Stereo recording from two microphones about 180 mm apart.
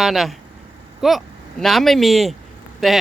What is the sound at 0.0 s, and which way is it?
A man's voice, centre (ahead or behind).